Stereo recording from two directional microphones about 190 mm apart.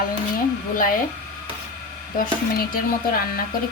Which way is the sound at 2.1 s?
45° left (ahead or behind).